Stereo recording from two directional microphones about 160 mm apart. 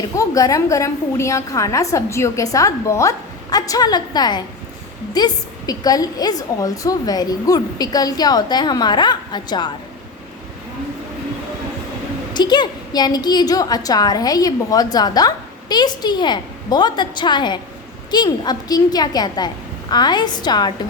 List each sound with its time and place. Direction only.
0.2 s a woman's voice: 20° left (ahead or behind)
12.3 s a woman's voice: 25° left (ahead or behind)